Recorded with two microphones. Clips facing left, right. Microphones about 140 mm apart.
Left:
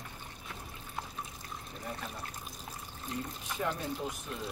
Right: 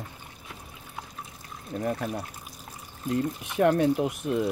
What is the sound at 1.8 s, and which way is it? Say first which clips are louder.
Speech: right 13 dB; 70° right (ahead or behind).